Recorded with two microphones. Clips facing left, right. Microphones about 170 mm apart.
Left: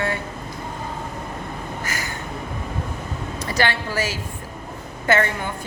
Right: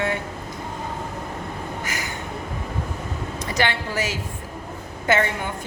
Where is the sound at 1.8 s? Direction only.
20° right (ahead or behind).